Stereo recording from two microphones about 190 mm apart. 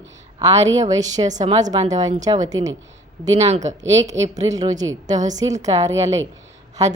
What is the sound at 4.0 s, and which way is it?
Speech, 20° right (ahead or behind).